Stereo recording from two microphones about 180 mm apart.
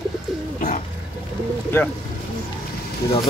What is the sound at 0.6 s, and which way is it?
Bird, 45° left (ahead or behind).